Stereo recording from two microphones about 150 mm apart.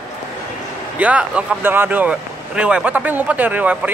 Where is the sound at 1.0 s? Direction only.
10° right (ahead or behind).